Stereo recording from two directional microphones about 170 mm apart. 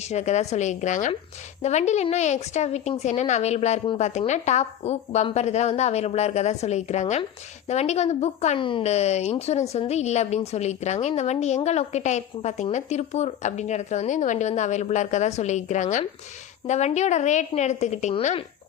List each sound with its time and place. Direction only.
0.0 s a woman's voice: 40° left (ahead or behind)